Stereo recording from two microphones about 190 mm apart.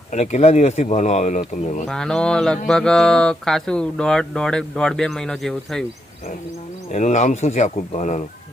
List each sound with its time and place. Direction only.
0.1 s speech: 35° left (ahead or behind)
1.9 s speech: 5° left (ahead or behind)
6.9 s speech: 40° left (ahead or behind)